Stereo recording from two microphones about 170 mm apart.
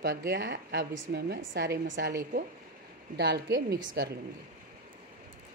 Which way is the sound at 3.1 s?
75° right (ahead or behind).